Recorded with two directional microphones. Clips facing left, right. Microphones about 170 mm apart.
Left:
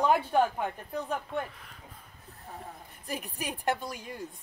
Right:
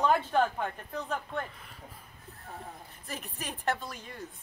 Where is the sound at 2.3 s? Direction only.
20° left (ahead or behind).